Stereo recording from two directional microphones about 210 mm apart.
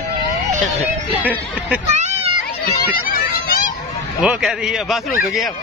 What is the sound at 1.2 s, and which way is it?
Speech, 10° right (ahead or behind).